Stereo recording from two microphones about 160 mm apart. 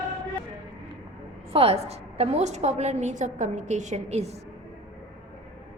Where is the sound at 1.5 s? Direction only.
40° right (ahead or behind).